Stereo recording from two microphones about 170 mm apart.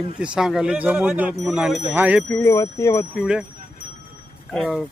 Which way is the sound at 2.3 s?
20° left (ahead or behind).